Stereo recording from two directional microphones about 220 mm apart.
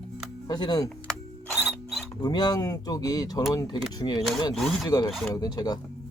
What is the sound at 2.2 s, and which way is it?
Speech, 15° left (ahead or behind).